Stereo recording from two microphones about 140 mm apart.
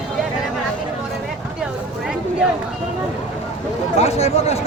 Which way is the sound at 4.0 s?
50° left (ahead or behind).